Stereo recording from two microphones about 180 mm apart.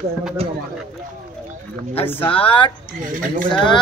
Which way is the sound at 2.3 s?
30° left (ahead or behind).